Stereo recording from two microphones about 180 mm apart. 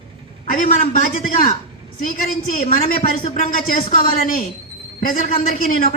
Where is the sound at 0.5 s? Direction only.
50° left (ahead or behind).